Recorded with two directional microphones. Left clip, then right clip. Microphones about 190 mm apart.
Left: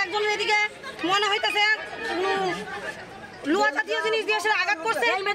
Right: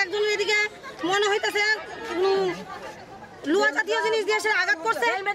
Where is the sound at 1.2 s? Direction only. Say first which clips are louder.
Even; 35° right (ahead or behind).